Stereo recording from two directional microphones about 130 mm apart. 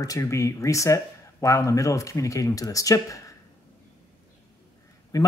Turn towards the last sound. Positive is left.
turn(degrees=30)  # may be behind; listen again after turning